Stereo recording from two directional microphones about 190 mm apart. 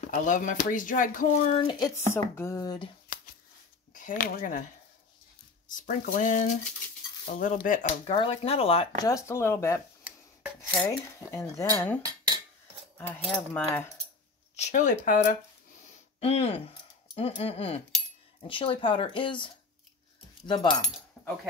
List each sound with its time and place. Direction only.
0.0 s speech: 40° left (ahead or behind)
2.1 s speech: 15° left (ahead or behind)
3.1 s shuffling cards: 50° left (ahead or behind)
3.9 s speech: 45° left (ahead or behind)
5.7 s speech: 45° left (ahead or behind)
8.1 s speech: 30° left (ahead or behind)
9.1 s speech: 15° left (ahead or behind)
10.0 s chopping: 5° right (ahead or behind)
10.9 s speech: 15° left (ahead or behind)
12.0 s dishes: 20° right (ahead or behind)
12.9 s speech: 10° left (ahead or behind)
14.5 s speech: 35° left (ahead or behind); by 20.8 s 20° left (ahead or behind)